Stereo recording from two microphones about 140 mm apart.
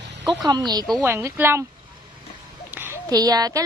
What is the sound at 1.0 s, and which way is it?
Speech, 15° right (ahead or behind).